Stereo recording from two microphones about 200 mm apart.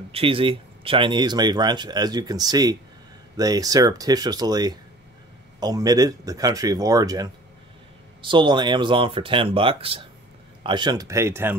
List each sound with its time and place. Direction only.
0.1 s speech: 25° right (ahead or behind)